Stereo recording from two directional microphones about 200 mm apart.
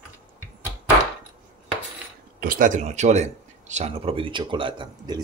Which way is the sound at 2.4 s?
45° right (ahead or behind).